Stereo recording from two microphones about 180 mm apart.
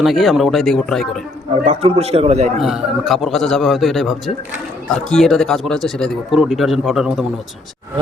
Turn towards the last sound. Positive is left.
turn(degrees=0)  # may be behind; listen again after turning